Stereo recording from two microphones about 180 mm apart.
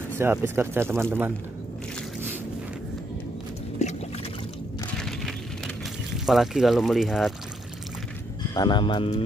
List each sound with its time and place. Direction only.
0.2 s speech: 10° right (ahead or behind)
3.8 s a sound: 40° left (ahead or behind)
4.9 s splinter: centre (ahead or behind)
6.2 s speech: centre (ahead or behind)
8.5 s speech: 25° left (ahead or behind)